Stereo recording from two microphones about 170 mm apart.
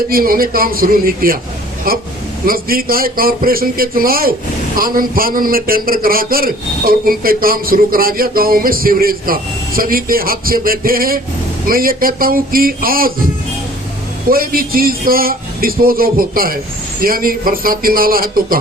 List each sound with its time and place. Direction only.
0.1 s a man's voice: 60° right (ahead or behind)
14.3 s a man's voice: 60° right (ahead or behind)